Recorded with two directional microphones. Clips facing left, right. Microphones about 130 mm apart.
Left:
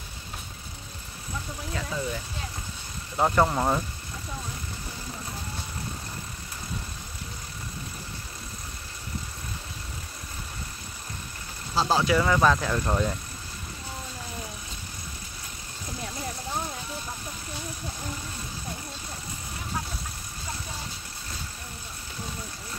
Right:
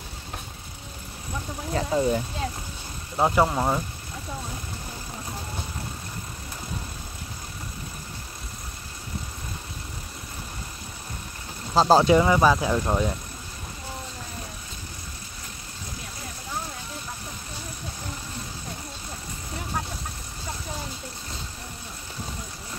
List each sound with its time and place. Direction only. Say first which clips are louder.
1.7 s speech: right 9 dB; 35° right (ahead or behind)
3.2 s speech: right 1 dB; 10° right (ahead or behind)
11.7 s speech: right 7 dB; 45° right (ahead or behind)
12.0 s speech: right 4 dB; 25° right (ahead or behind)